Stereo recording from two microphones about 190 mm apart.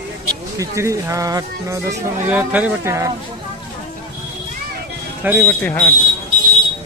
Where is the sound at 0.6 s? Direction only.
15° right (ahead or behind).